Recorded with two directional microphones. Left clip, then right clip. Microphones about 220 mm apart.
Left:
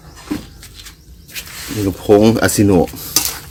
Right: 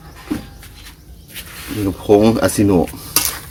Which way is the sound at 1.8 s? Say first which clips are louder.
Left 1 dB; 25° left (ahead or behind).